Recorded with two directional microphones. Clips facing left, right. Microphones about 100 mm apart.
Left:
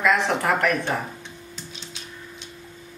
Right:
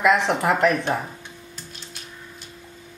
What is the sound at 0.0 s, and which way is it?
Speech, 20° right (ahead or behind).